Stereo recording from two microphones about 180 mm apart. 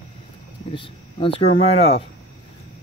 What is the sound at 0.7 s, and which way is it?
Speech, 30° left (ahead or behind).